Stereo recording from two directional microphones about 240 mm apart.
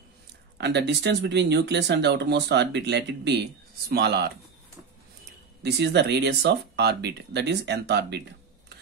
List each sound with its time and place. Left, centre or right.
0.6 s speech: right
5.6 s speech: right